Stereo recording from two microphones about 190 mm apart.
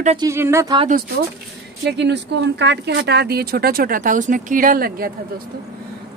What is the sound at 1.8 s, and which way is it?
A woman's voice, 65° right (ahead or behind).